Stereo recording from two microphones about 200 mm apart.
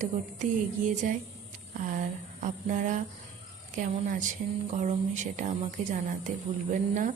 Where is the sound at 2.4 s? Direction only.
40° right (ahead or behind).